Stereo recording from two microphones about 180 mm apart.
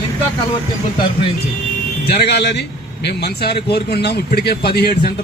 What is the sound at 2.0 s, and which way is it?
A man's voice, 65° left (ahead or behind).